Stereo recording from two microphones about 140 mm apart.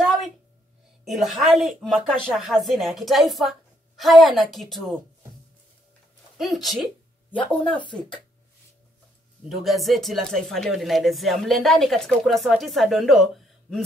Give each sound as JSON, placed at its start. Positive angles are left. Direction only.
{"t": 0.0, "sound": "a sound", "side_deg": 0}
{"t": 1.0, "sound": "speech", "side_deg": 0}
{"t": 6.3, "sound": "speech", "side_deg": 0}
{"t": 9.6, "sound": "speech", "side_deg": 0}